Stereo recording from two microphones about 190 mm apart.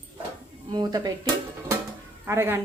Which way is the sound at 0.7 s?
20° right (ahead or behind).